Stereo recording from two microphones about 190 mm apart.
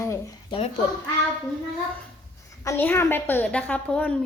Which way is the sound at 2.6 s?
10° left (ahead or behind).